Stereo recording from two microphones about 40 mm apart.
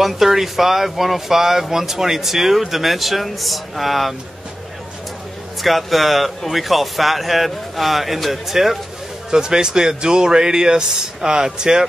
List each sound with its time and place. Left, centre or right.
0.0 s speech: centre
5.6 s speech: centre
9.3 s speech: centre